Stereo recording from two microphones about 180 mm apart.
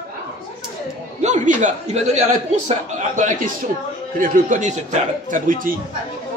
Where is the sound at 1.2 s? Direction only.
40° right (ahead or behind).